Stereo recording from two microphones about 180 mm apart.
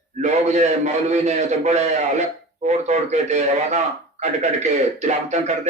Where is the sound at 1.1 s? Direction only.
40° right (ahead or behind).